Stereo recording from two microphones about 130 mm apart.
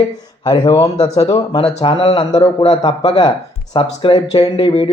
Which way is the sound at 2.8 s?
35° left (ahead or behind).